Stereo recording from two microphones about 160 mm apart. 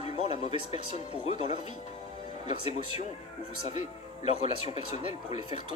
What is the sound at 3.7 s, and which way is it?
Speech, 45° left (ahead or behind).